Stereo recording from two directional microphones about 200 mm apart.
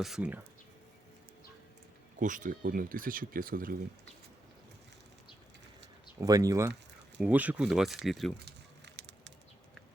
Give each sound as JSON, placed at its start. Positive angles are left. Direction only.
{"t": 0.0, "sound": "speech", "side_deg": -5}
{"t": 2.1, "sound": "speech", "side_deg": -40}
{"t": 6.1, "sound": "speech", "side_deg": -15}
{"t": 8.4, "sound": "a sound", "side_deg": -60}